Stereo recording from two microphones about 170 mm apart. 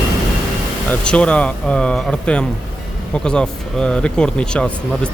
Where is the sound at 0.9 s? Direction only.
5° left (ahead or behind).